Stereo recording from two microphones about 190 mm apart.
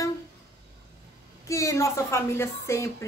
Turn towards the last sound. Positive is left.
turn(degrees=15)  # may be behind; listen again after turning